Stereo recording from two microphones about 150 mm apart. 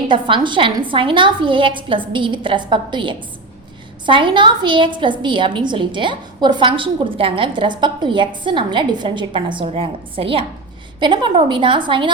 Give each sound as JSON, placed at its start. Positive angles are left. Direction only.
{"t": 0.1, "sound": "a woman's voice", "side_deg": -30}